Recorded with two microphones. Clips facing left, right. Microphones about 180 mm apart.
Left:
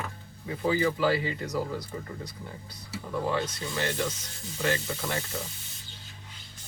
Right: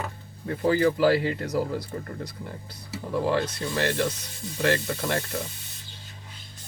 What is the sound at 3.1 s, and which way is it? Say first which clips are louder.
Speech: right 4 dB; 65° right (ahead or behind).